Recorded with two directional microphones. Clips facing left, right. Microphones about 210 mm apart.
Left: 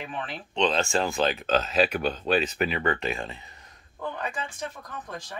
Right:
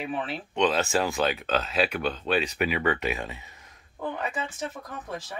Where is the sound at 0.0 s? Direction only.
5° right (ahead or behind).